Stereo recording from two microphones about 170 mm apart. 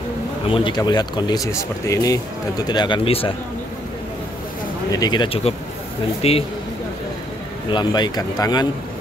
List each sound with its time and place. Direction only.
0.5 s speech: 30° left (ahead or behind)
4.9 s speech: 25° left (ahead or behind)
7.7 s speech: 25° left (ahead or behind)